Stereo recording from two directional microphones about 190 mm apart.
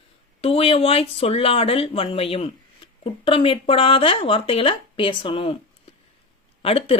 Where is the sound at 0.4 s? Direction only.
30° left (ahead or behind).